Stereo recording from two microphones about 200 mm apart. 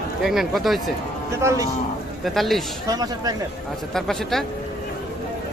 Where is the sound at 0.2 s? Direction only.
Centre (ahead or behind).